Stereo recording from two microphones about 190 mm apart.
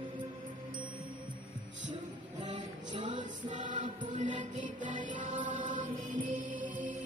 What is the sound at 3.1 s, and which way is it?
Music, 40° right (ahead or behind).